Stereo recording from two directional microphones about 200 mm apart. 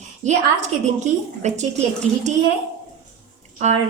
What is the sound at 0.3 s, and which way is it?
A woman's voice, 35° right (ahead or behind).